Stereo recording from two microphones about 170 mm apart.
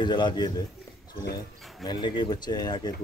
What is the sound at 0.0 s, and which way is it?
Speech, 25° left (ahead or behind).